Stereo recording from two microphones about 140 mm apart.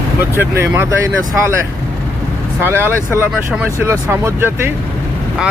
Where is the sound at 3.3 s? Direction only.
5° right (ahead or behind).